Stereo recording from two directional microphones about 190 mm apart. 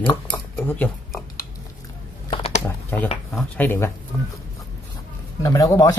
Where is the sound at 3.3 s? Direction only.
10° left (ahead or behind).